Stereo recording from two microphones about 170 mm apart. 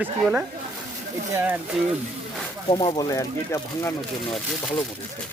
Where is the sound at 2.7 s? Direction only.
25° left (ahead or behind).